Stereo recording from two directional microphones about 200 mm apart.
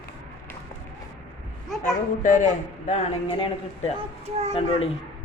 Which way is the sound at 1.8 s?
40° left (ahead or behind).